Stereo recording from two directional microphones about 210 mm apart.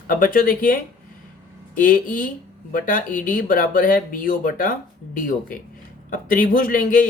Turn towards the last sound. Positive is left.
turn(degrees=40)  # may be behind; listen again after turning